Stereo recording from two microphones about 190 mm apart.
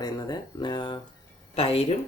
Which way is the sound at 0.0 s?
20° left (ahead or behind).